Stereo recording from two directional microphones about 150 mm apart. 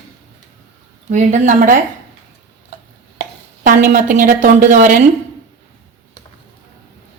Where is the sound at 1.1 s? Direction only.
55° right (ahead or behind).